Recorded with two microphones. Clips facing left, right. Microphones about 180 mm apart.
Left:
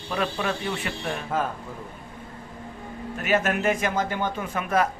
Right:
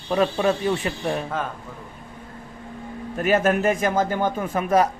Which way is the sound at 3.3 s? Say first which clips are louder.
Right 4 dB; 40° right (ahead or behind).